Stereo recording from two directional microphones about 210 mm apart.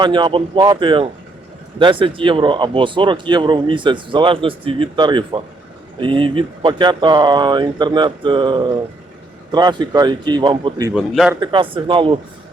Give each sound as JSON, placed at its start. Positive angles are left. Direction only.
{"t": 0.0, "sound": "speech", "side_deg": -20}
{"t": 10.9, "sound": "a man's voice", "side_deg": 0}
{"t": 11.3, "sound": "speech", "side_deg": -25}